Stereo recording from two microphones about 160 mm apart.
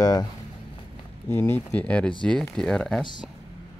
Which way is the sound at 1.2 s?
15° left (ahead or behind).